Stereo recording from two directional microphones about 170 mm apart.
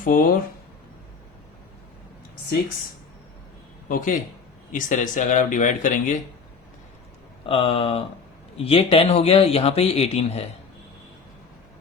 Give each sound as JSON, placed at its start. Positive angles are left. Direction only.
{"t": 0.0, "sound": "speech", "side_deg": 55}
{"t": 3.8, "sound": "a man's voice", "side_deg": 55}
{"t": 7.4, "sound": "a man's voice", "side_deg": 35}